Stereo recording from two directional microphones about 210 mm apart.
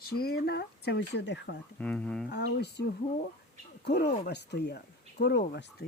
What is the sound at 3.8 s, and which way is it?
Speech, 50° left (ahead or behind).